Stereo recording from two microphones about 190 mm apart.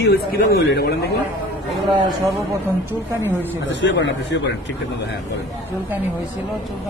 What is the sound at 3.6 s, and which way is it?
A man's voice, 75° left (ahead or behind).